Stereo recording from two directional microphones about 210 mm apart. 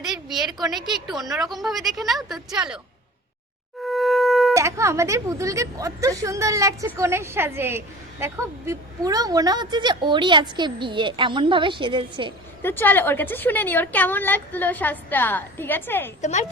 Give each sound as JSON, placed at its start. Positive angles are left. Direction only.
{"t": 0.0, "sound": "a woman's voice", "side_deg": 0}
{"t": 3.8, "sound": "wind instrument", "side_deg": 0}
{"t": 4.5, "sound": "a woman's voice", "side_deg": -15}
{"t": 12.6, "sound": "a woman's voice", "side_deg": 10}